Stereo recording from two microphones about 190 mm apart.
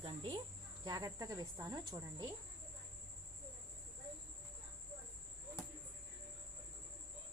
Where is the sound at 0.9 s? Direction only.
20° right (ahead or behind).